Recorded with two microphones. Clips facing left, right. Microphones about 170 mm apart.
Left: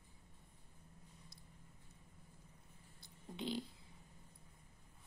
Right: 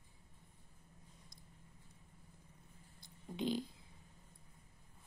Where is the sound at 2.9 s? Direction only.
15° right (ahead or behind).